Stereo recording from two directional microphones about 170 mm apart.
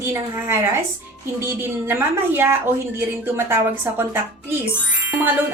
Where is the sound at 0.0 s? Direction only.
15° right (ahead or behind).